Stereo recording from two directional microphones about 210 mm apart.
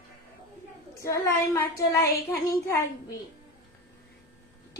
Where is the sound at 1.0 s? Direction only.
15° left (ahead or behind).